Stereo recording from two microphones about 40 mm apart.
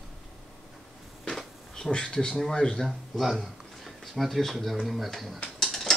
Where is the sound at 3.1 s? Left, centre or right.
Centre.